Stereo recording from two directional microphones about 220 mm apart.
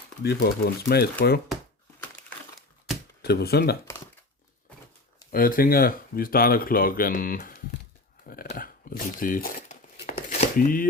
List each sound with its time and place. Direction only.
0.2 s speech: 45° left (ahead or behind)
2.0 s crumpling: 5° left (ahead or behind)
3.2 s speech: 45° left (ahead or behind)
5.3 s speech: 40° left (ahead or behind)
8.5 s crumpling: 40° left (ahead or behind)